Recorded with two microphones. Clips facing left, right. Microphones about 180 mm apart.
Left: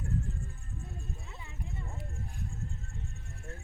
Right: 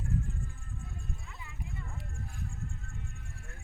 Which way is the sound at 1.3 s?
30° left (ahead or behind).